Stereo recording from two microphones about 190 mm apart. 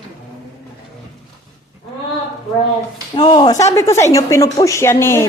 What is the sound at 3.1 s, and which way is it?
Speech, 25° left (ahead or behind).